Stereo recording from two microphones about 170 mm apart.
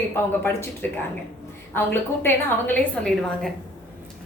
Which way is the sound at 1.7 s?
10° left (ahead or behind).